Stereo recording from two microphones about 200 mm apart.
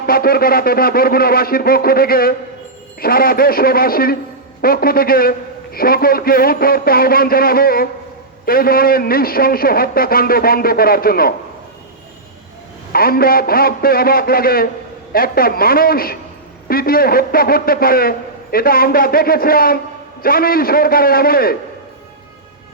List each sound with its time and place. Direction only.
0.0 s a man's voice: 50° left (ahead or behind)
12.9 s a man's voice: 50° left (ahead or behind)